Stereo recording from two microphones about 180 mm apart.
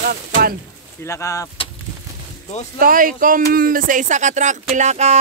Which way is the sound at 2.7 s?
50° right (ahead or behind).